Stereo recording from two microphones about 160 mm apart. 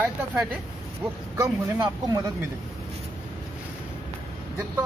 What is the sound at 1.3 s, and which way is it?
Speech, 20° right (ahead or behind).